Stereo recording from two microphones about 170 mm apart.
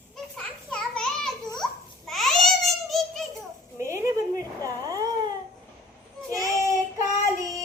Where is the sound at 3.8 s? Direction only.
15° right (ahead or behind).